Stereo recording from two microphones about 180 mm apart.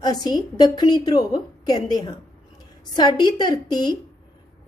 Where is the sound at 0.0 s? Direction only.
20° left (ahead or behind).